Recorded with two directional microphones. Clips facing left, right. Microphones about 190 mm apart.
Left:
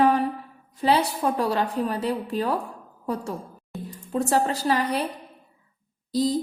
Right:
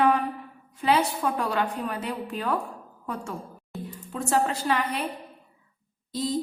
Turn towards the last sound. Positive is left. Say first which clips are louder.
# left 6 dB
turn(degrees=35)  # may be behind; listen again after turning